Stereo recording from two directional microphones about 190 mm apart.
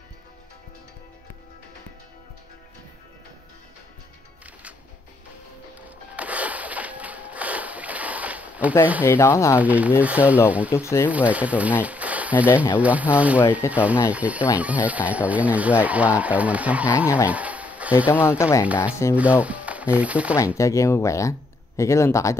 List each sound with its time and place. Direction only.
6.1 s a sound: 5° right (ahead or behind)
9.0 s speech: 15° left (ahead or behind)
9.6 s speech: 10° right (ahead or behind)
10.7 s speech: 15° left (ahead or behind)
11.1 s speech: 5° right (ahead or behind)
11.8 s a sound: 5° right (ahead or behind)
12.7 s speech: 10° right (ahead or behind)
13.4 s speech: 10° left (ahead or behind)
13.7 s speech: 5° right (ahead or behind)
17.3 s a sound: 10° right (ahead or behind)
18.4 s speech: 15° left (ahead or behind)
18.7 s speech: 5° right (ahead or behind)
20.5 s speech: 15° left (ahead or behind)